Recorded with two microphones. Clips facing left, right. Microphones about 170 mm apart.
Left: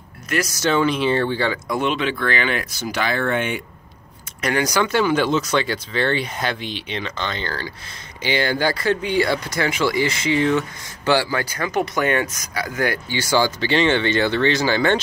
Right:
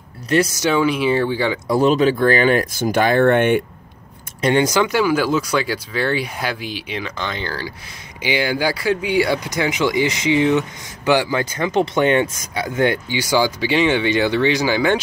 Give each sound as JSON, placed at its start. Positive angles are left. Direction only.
{"t": 0.6, "sound": "speech", "side_deg": -10}
{"t": 1.7, "sound": "speech", "side_deg": -35}
{"t": 4.4, "sound": "speech", "side_deg": -25}